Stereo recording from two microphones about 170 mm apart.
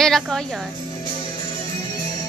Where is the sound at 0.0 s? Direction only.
Centre (ahead or behind).